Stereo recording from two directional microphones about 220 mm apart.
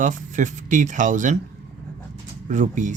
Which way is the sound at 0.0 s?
35° right (ahead or behind).